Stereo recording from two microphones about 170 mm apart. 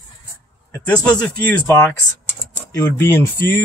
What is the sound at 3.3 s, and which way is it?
Speech, 10° left (ahead or behind).